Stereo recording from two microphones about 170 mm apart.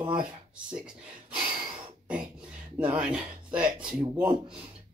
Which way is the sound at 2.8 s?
5° right (ahead or behind).